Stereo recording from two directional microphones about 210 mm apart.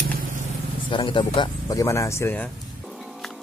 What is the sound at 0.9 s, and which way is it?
Speech, 25° left (ahead or behind).